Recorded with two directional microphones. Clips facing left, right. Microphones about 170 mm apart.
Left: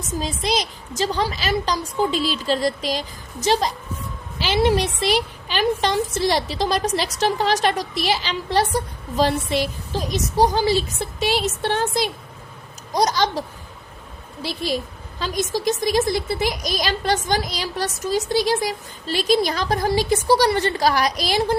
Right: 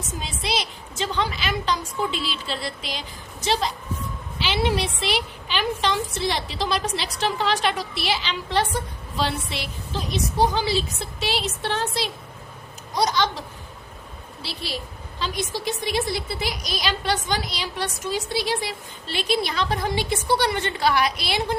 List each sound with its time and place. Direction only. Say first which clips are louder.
0.2 s a woman's voice: left 5 dB; 40° left (ahead or behind)
14.4 s a woman's voice: left 8 dB; 45° left (ahead or behind)